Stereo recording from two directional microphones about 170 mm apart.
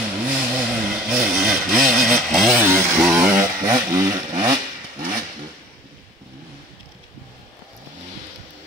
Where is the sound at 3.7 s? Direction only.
20° right (ahead or behind).